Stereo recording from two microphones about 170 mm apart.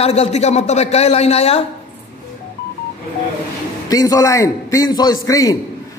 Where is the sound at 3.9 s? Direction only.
20° left (ahead or behind).